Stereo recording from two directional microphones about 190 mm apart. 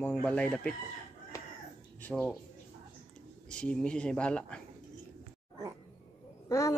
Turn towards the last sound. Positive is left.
turn(degrees=15)  # may be behind; listen again after turning